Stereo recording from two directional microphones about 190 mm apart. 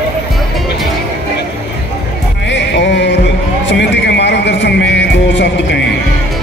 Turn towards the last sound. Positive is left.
turn(degrees=65)  # may be behind; listen again after turning